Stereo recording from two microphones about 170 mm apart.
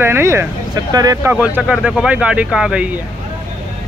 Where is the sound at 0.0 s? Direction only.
15° right (ahead or behind).